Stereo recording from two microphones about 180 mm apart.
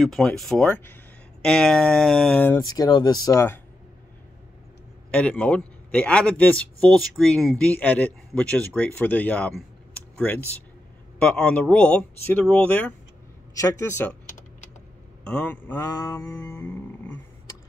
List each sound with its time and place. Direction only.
0.0 s speech: centre (ahead or behind)
2.6 s speech: 20° left (ahead or behind)
5.1 s a man's voice: 10° left (ahead or behind)
13.6 s a man's voice: 20° left (ahead or behind)
15.2 s a sound: 10° left (ahead or behind)